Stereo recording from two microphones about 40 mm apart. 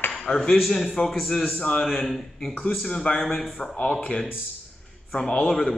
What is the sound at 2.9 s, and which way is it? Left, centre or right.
Speech, left.